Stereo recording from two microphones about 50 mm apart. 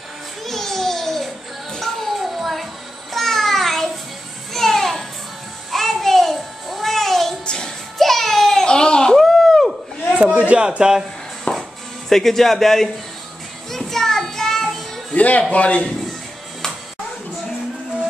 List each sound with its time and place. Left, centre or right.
0.5 s music: centre
4.6 s children playing: centre
5.7 s music: centre
8.6 s a sound: centre
9.2 s a sound: centre
10.3 s speech: right
10.8 s speech: centre
11.5 s music: left
12.1 s speech: centre
13.7 s music: centre
15.1 s speech: left